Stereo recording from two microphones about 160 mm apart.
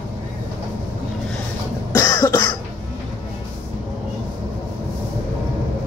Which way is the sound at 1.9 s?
20° left (ahead or behind).